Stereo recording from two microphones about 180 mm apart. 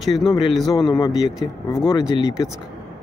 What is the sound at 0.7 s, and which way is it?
Speech, 20° left (ahead or behind).